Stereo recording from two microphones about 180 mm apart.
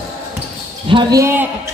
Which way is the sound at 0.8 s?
30° right (ahead or behind).